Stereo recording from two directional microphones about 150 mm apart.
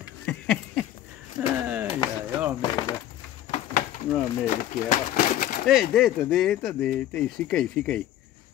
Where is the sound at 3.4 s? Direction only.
50° left (ahead or behind).